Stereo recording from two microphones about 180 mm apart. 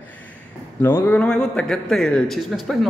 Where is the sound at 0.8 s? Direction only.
10° left (ahead or behind).